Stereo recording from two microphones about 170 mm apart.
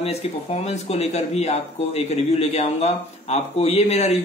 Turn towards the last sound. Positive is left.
turn(degrees=40)  # may be behind; listen again after turning